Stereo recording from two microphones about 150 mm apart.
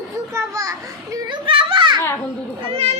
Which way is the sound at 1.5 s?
35° right (ahead or behind).